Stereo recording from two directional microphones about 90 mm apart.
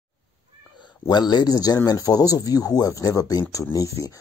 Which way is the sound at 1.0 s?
50° left (ahead or behind).